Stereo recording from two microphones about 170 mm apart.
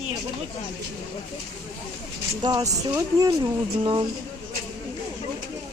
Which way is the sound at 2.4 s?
25° right (ahead or behind).